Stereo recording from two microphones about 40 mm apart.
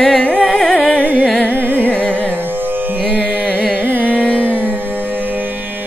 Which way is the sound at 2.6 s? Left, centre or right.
Right.